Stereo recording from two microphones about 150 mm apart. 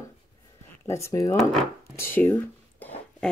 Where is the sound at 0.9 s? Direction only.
20° left (ahead or behind).